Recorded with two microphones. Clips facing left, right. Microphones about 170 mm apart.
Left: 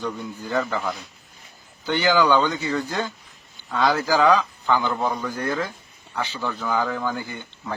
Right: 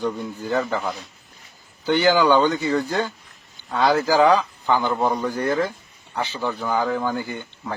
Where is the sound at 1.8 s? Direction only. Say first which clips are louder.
Right 2 dB; 15° right (ahead or behind).